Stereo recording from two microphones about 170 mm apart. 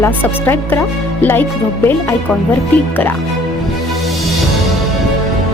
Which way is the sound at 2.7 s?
10° left (ahead or behind).